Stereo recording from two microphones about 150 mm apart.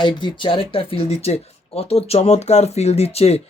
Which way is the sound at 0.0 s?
30° left (ahead or behind).